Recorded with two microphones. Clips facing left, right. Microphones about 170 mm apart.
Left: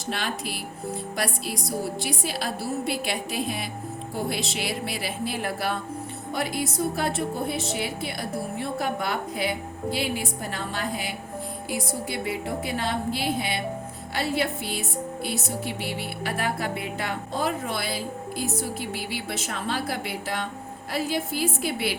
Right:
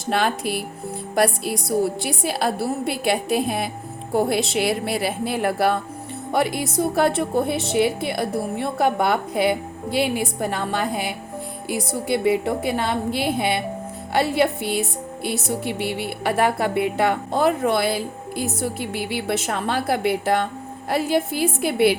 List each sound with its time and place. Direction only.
0.1 s a woman's voice: 55° right (ahead or behind)